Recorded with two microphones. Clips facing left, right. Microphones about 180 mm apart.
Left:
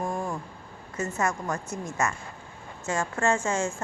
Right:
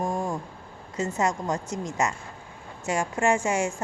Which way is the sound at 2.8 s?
15° right (ahead or behind).